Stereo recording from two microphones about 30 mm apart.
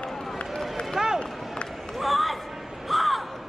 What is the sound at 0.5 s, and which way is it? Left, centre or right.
Run, centre.